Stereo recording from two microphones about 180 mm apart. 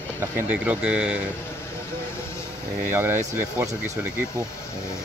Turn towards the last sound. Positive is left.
turn(degrees=-10)  # may be behind; listen again after turning